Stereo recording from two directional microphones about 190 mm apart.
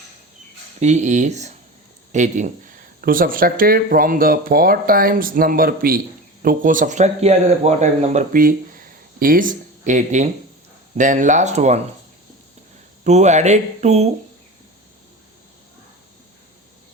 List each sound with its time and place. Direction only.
0.8 s speech: 40° right (ahead or behind)
13.1 s speech: 35° right (ahead or behind)